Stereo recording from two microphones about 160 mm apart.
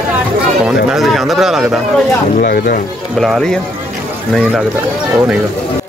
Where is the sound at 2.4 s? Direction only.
80° left.